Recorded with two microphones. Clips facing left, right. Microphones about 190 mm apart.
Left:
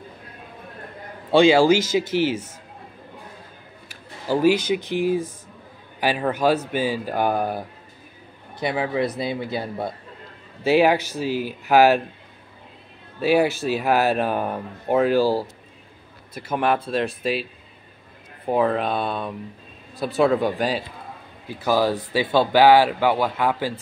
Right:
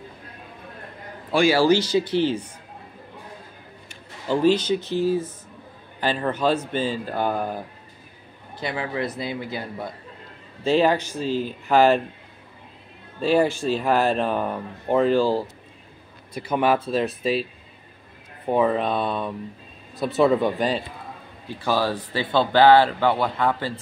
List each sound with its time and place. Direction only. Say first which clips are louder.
1.3 s speech: left 4 dB; 20° left (ahead or behind)
2.1 s speech: left 1 dB; 10° left (ahead or behind)
3.9 s speech: left 1 dB; 10° left (ahead or behind); by 9.8 s 25° left (ahead or behind)
10.6 s speech: left 2 dB; 10° left (ahead or behind)
13.2 s speech: left 1 dB; 5° left (ahead or behind)
18.5 s speech: even; centre (ahead or behind)